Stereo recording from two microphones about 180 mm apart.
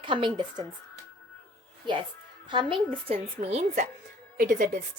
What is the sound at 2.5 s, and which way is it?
A woman's voice, 25° right (ahead or behind).